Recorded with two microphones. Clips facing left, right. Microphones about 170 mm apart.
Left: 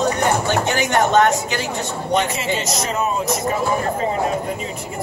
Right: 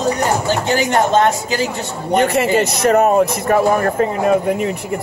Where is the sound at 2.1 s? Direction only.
60° right (ahead or behind).